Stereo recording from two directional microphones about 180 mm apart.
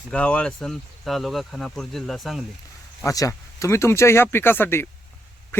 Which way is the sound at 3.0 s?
20° left (ahead or behind).